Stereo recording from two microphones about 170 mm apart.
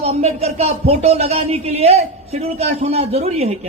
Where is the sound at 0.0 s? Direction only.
40° right (ahead or behind).